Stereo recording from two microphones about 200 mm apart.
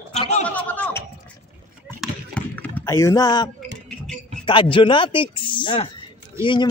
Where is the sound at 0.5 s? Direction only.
5° left (ahead or behind).